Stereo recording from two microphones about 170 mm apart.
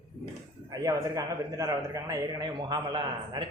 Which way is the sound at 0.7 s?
20° right (ahead or behind).